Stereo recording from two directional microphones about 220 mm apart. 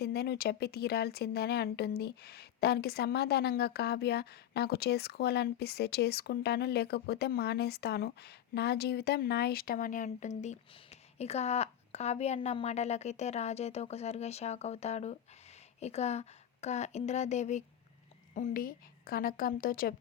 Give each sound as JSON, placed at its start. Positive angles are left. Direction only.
{"t": 0.0, "sound": "a woman's voice", "side_deg": 45}